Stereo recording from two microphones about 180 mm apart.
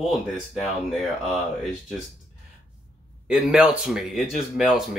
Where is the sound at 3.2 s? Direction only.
5° right (ahead or behind).